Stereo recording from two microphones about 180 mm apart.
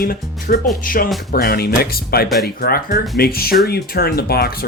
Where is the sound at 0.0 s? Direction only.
55° left (ahead or behind).